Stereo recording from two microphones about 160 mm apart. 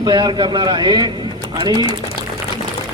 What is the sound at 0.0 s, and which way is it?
A man's voice, 25° right (ahead or behind).